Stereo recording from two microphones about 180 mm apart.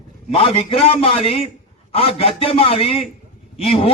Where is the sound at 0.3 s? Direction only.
35° left (ahead or behind).